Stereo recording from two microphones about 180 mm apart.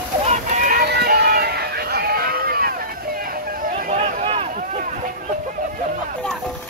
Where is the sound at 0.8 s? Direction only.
65° right (ahead or behind).